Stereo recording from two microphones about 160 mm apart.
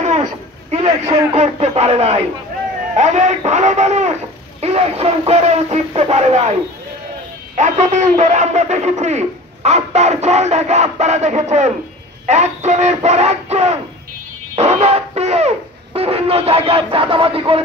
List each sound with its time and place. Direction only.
0.0 s a sound: 45° right (ahead or behind)
1.3 s a man's voice: 40° right (ahead or behind)
7.5 s a man's voice: 50° right (ahead or behind)
14.5 s music: 40° right (ahead or behind)